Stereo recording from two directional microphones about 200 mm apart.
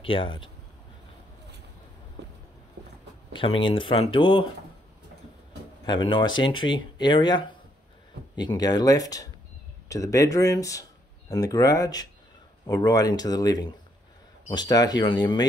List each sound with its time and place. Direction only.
0.0 s speech: 25° left (ahead or behind)
3.3 s speech: 25° left (ahead or behind)
5.9 s speech: 25° left (ahead or behind)